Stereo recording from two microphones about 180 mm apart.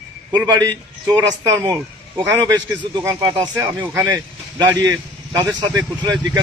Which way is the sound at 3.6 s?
15° right (ahead or behind).